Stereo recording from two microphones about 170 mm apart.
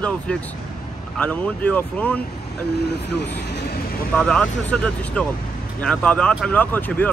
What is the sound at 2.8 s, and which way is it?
Speech, 75° left (ahead or behind).